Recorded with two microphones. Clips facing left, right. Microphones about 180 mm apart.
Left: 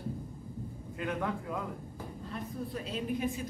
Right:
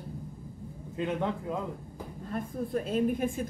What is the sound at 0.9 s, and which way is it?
Speech, 25° right (ahead or behind).